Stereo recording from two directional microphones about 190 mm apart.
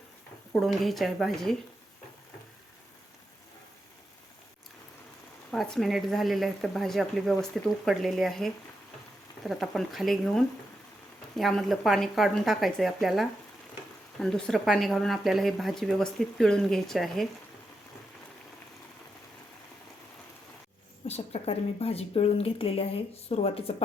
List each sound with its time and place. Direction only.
0.5 s a woman's voice: centre (ahead or behind)
5.5 s a woman's voice: centre (ahead or behind)
21.1 s speech: 35° left (ahead or behind)